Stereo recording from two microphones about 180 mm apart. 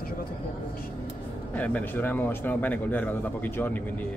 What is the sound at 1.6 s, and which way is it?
Speech, 10° left (ahead or behind).